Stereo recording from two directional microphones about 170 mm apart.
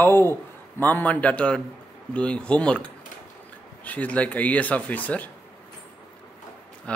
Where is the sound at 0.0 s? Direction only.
15° left (ahead or behind).